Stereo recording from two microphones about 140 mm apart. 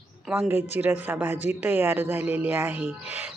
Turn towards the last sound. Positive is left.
turn(degrees=-15)  # may be behind; listen again after turning